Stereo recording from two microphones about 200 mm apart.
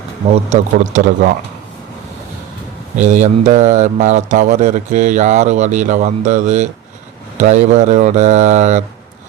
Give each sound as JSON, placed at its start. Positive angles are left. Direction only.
{"t": 0.3, "sound": "speech", "side_deg": -40}
{"t": 3.0, "sound": "speech", "side_deg": -35}